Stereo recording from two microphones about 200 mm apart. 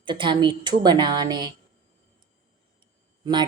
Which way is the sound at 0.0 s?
25° right (ahead or behind).